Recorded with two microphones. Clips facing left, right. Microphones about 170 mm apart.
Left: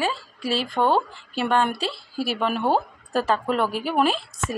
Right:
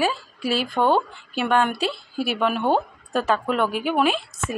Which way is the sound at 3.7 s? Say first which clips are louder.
Right 2 dB; 30° left (ahead or behind).